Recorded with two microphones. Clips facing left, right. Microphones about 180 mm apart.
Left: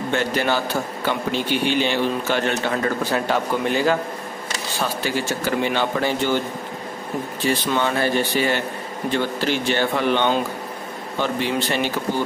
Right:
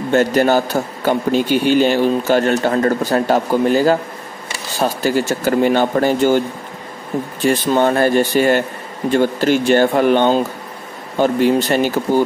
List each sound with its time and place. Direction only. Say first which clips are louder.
0.1 s a man's voice: right 9 dB; 45° right (ahead or behind)
7.4 s a man's voice: right 7 dB; 45° right (ahead or behind)